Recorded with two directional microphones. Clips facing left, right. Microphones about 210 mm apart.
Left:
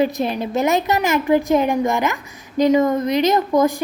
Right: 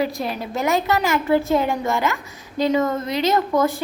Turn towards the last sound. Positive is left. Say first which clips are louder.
# left 3 dB
turn(degrees=15)  # may be behind; listen again after turning